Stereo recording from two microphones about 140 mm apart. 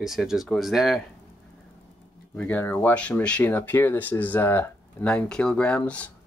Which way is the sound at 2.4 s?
10° left (ahead or behind).